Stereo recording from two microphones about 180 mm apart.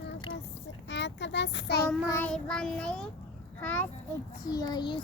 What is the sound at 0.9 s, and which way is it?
Speech, 80° left.